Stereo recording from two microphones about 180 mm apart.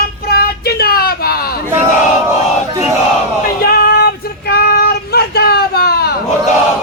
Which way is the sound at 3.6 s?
60° left (ahead or behind).